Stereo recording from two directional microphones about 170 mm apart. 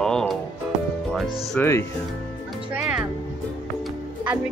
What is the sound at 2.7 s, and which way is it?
Music, 10° right (ahead or behind).